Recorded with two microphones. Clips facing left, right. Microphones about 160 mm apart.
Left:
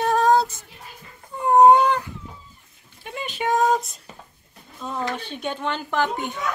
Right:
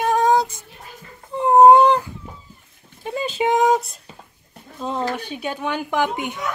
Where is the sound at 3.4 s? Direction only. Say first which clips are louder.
Right 2 dB; 15° right (ahead or behind).